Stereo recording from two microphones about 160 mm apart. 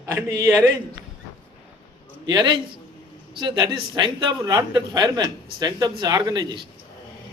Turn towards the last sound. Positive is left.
turn(degrees=-25)  # may be behind; listen again after turning